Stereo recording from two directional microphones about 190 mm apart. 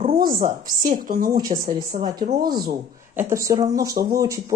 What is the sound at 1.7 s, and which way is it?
Speech, 40° right (ahead or behind).